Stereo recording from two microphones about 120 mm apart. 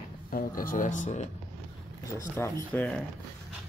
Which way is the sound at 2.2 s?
25° left (ahead or behind).